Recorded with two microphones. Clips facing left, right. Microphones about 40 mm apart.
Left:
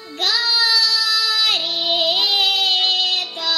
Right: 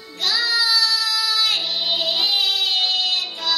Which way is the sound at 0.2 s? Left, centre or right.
Left.